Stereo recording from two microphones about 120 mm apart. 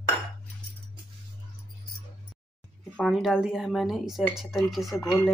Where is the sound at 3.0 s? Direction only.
Centre (ahead or behind).